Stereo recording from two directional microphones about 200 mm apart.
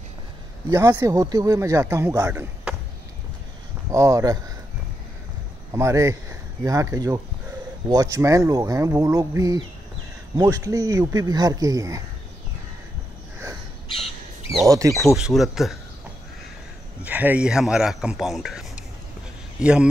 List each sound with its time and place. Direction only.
0.7 s speech: 15° right (ahead or behind)
3.9 s speech: 15° right (ahead or behind)
5.7 s speech: 15° right (ahead or behind)
14.7 s speech: 15° right (ahead or behind)
15.1 s a man's voice: centre (ahead or behind)
17.0 s a man's voice: 10° right (ahead or behind)